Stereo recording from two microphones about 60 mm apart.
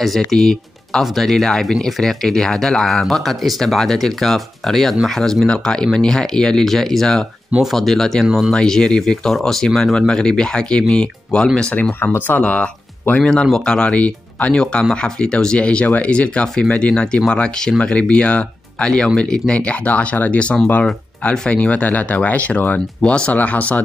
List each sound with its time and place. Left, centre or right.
0.3 s speech: centre
8.5 s speech: centre
13.2 s speech: centre